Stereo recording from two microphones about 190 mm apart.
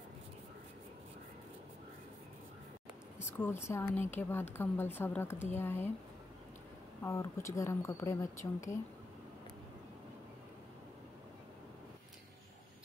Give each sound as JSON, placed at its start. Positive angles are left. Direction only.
{"t": 3.2, "sound": "a woman's voice", "side_deg": 10}
{"t": 7.0, "sound": "a woman's voice", "side_deg": 15}